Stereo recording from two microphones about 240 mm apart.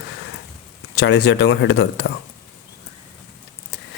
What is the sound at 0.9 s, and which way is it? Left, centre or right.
Speech, left.